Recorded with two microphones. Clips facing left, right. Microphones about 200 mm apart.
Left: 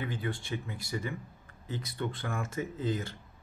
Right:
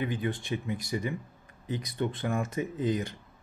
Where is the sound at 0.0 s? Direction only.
20° right (ahead or behind).